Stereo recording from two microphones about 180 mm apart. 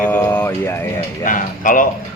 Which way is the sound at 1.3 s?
45° left (ahead or behind).